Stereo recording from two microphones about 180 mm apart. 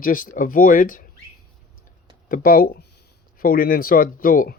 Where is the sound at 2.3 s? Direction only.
50° left (ahead or behind).